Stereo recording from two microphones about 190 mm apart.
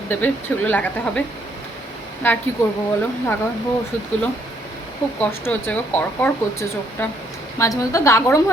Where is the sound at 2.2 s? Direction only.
10° left (ahead or behind).